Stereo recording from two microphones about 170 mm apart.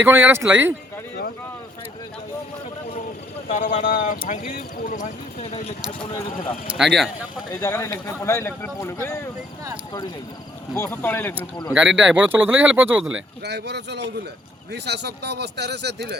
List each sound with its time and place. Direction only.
0.0 s speech: 15° right (ahead or behind)
3.5 s speech: 50° left (ahead or behind)
6.7 s speech: centre (ahead or behind)
7.6 s speech: 20° left (ahead or behind)
10.8 s speech: 10° left (ahead or behind)
11.7 s speech: 5° right (ahead or behind)
13.1 s speech: 80° right